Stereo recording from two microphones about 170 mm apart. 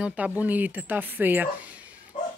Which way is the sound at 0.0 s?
10° right (ahead or behind).